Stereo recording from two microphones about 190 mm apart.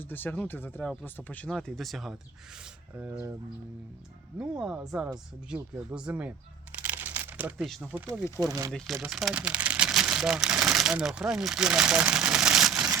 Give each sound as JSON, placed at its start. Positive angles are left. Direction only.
{"t": 0.0, "sound": "speech", "side_deg": 10}
{"t": 2.9, "sound": "speech", "side_deg": -10}
{"t": 4.4, "sound": "speech", "side_deg": -5}
{"t": 6.8, "sound": "crumpling", "side_deg": -10}
{"t": 7.7, "sound": "speech", "side_deg": -10}
{"t": 8.7, "sound": "speech", "side_deg": 0}